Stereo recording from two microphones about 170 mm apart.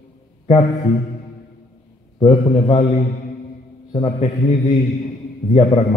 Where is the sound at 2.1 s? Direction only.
35° left (ahead or behind).